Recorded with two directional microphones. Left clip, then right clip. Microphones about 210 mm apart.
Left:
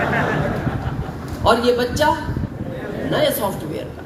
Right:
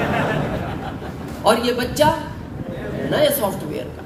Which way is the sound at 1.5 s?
35° right (ahead or behind).